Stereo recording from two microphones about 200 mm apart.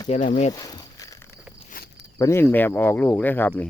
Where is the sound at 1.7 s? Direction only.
50° left (ahead or behind).